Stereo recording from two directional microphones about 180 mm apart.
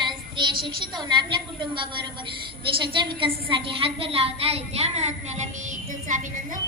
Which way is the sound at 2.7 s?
25° right (ahead or behind).